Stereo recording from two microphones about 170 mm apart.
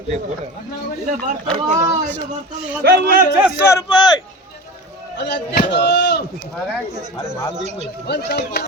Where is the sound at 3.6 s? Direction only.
20° left (ahead or behind).